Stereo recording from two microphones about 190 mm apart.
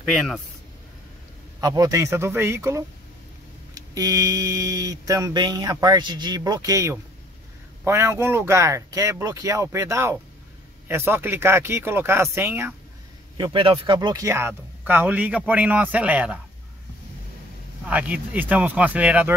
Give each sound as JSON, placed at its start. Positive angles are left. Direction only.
{"t": 1.6, "sound": "speech", "side_deg": -20}
{"t": 3.7, "sound": "mantra", "side_deg": -20}
{"t": 7.8, "sound": "speech", "side_deg": -15}
{"t": 13.4, "sound": "speech", "side_deg": -25}
{"t": 17.8, "sound": "speech", "side_deg": -5}